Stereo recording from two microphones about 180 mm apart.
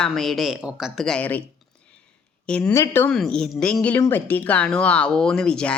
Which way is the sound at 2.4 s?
5° left (ahead or behind).